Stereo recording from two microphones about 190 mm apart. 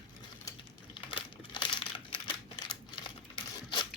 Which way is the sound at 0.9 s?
25° left (ahead or behind).